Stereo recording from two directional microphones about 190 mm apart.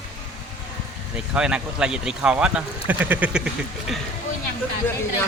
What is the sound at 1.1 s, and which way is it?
Speech, 5° right (ahead or behind).